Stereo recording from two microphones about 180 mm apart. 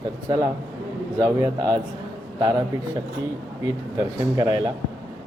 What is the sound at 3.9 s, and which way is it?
Speech, 20° right (ahead or behind).